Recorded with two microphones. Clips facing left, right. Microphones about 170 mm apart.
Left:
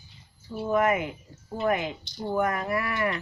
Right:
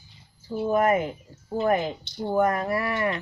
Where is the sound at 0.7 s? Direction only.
35° right (ahead or behind).